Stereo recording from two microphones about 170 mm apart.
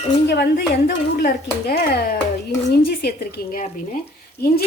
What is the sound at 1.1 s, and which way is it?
Speech, 60° left (ahead or behind).